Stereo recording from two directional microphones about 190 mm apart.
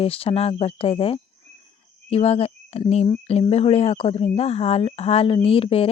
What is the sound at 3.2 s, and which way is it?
Speech, 30° left (ahead or behind).